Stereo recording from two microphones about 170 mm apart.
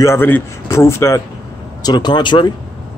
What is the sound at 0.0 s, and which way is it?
Speech, 15° left (ahead or behind).